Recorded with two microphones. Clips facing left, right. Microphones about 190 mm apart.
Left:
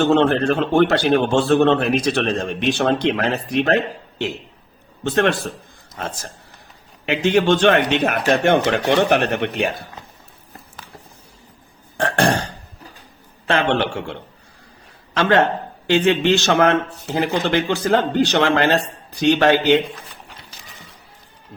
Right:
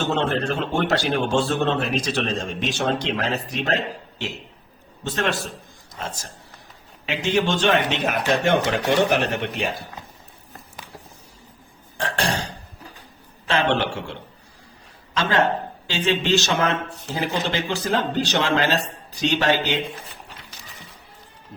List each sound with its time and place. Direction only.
0.0 s speech: 60° left (ahead or behind)
7.0 s speech: 60° left (ahead or behind)
11.9 s burping: 55° left (ahead or behind)
13.5 s a man's voice: 55° left (ahead or behind)